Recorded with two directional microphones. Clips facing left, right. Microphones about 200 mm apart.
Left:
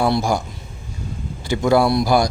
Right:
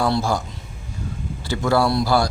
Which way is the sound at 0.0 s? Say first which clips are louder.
Left 2 dB; 15° left (ahead or behind).